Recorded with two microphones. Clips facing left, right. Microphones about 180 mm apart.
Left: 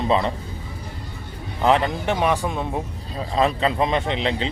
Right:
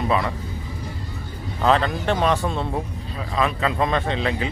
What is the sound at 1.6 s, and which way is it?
Speech, 15° left (ahead or behind).